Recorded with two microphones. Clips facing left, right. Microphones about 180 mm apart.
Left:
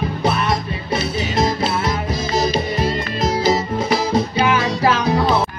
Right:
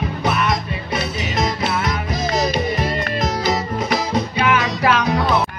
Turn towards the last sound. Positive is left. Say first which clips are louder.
# left 1 dB
turn(degrees=30)  # may be behind; listen again after turning